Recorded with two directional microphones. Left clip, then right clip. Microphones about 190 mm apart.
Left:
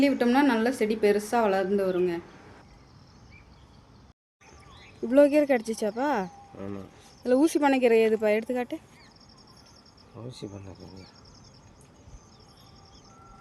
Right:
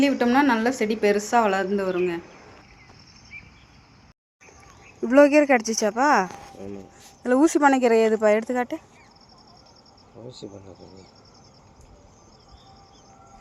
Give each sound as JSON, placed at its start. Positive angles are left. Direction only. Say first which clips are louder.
{"t": 0.0, "sound": "a woman's voice", "louder": "right 3 dB", "side_deg": 0}
{"t": 5.0, "sound": "speech", "louder": "right 4 dB", "side_deg": -15}
{"t": 6.6, "sound": "speech", "louder": "left 2 dB", "side_deg": 60}
{"t": 7.2, "sound": "speech", "louder": "right 4 dB", "side_deg": -25}
{"t": 10.2, "sound": "speech", "louder": "right 2 dB", "side_deg": 65}